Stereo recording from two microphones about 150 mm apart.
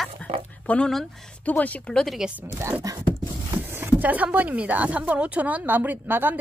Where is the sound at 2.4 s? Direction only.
20° right (ahead or behind).